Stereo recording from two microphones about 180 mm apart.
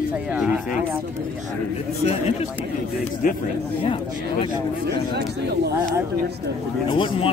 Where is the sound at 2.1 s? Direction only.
35° left (ahead or behind).